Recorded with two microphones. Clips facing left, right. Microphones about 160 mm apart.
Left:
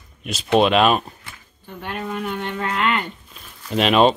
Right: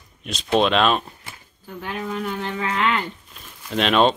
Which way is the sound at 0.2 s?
5° left (ahead or behind).